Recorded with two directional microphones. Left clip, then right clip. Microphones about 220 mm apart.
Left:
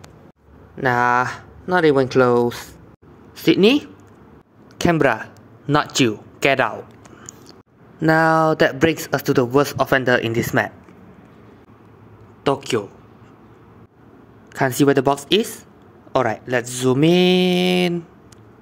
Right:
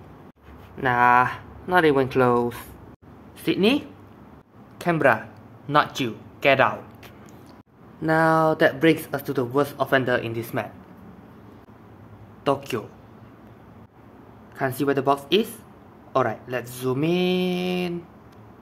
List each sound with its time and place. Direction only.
0.8 s speech: 25° left (ahead or behind)
4.7 s speech: 35° left (ahead or behind)
8.0 s a man's voice: 35° left (ahead or behind)
12.4 s speech: 20° left (ahead or behind)
14.5 s a man's voice: 35° left (ahead or behind)